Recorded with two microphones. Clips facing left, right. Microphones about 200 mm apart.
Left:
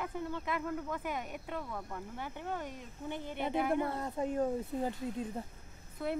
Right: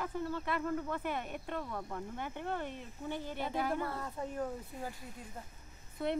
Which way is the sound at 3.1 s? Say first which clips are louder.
Left 3 dB; 20° left (ahead or behind).